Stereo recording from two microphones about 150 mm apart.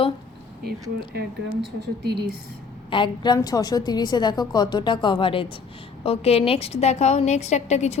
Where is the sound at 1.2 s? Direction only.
90° right.